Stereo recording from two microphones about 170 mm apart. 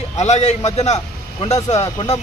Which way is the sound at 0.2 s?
40° left (ahead or behind).